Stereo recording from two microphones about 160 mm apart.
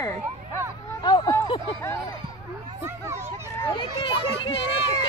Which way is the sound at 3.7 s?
30° left (ahead or behind).